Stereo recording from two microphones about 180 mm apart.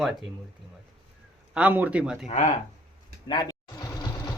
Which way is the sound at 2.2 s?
45° left (ahead or behind).